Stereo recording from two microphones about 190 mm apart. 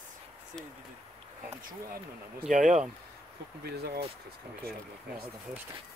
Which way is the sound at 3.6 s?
55° right (ahead or behind).